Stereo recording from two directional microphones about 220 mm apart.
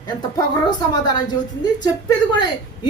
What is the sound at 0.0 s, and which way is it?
A woman's voice, 20° left (ahead or behind).